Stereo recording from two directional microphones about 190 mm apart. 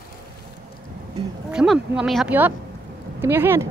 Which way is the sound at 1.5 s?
5° right (ahead or behind).